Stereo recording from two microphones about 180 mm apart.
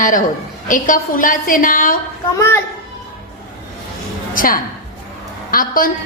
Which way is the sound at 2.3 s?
15° left (ahead or behind).